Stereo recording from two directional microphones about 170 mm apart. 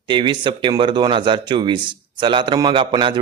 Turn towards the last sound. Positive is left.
turn(degrees=-30)  # may be behind; listen again after turning